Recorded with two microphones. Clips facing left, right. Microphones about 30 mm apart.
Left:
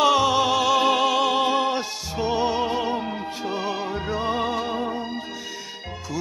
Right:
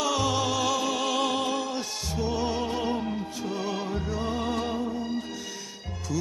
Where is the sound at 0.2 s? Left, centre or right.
Left.